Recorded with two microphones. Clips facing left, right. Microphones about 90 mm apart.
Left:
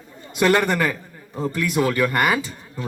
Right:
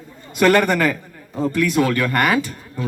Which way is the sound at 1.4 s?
15° left (ahead or behind).